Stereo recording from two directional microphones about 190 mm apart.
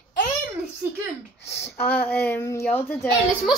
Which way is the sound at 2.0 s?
10° left (ahead or behind).